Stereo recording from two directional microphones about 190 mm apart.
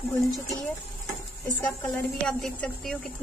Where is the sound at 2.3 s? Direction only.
5° left (ahead or behind).